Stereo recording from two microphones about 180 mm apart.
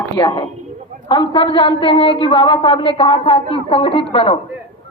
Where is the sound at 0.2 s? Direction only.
25° left (ahead or behind).